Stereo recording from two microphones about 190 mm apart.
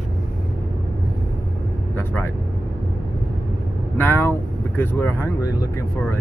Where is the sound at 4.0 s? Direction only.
10° left (ahead or behind).